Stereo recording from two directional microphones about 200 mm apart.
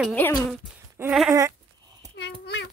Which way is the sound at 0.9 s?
5° right (ahead or behind).